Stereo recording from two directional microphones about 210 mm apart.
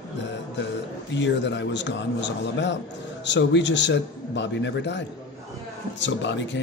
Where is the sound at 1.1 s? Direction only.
55° left (ahead or behind).